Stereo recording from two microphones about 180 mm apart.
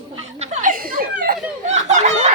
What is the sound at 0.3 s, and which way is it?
Chuckle, 40° right (ahead or behind).